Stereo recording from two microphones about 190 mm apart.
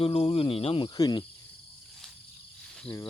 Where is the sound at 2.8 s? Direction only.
10° left (ahead or behind).